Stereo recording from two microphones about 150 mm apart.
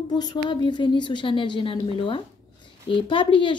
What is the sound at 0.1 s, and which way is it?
A woman's voice, 30° left (ahead or behind).